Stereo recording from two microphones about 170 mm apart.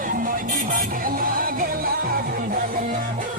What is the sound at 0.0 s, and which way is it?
Music, 55° right (ahead or behind).